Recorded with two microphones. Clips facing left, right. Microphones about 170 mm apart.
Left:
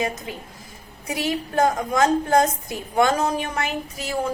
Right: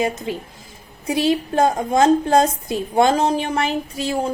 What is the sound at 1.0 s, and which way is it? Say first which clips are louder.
A woman's voice: right 7 dB; 25° right (ahead or behind).